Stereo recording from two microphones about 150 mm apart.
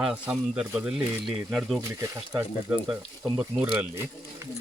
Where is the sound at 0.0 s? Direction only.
5° right (ahead or behind).